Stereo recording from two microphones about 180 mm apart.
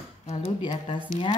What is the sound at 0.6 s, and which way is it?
Speech, 25° left (ahead or behind).